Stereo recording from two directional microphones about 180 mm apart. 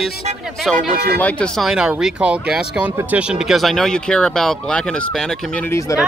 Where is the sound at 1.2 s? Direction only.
5° left (ahead or behind).